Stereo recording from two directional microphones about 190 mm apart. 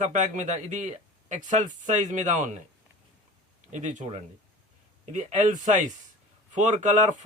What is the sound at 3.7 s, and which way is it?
Speech, 40° right (ahead or behind).